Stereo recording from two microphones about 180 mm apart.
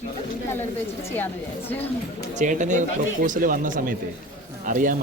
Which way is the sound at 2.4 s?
45° right (ahead or behind).